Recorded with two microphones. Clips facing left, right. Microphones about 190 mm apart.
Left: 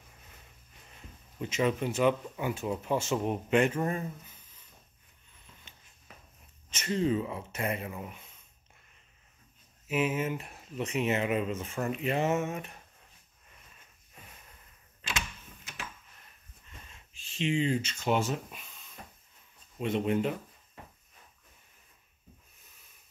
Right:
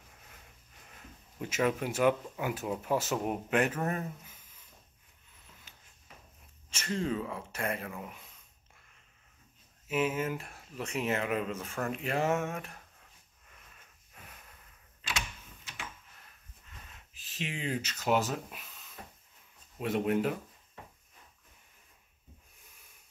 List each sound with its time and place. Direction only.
1.4 s speech: 5° right (ahead or behind)
3.9 s a sound: 10° right (ahead or behind)
6.8 s speech: 5° left (ahead or behind)
9.8 s speech: 5° left (ahead or behind)
11.6 s speech: 15° left (ahead or behind)
11.9 s speech: centre (ahead or behind)
17.1 s speech: 5° right (ahead or behind)
19.8 s speech: 5° right (ahead or behind)